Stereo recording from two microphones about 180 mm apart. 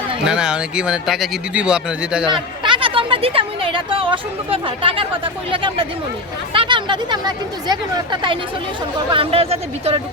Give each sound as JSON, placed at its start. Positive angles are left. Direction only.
{"t": 0.3, "sound": "speech", "side_deg": -5}
{"t": 2.3, "sound": "speech", "side_deg": -25}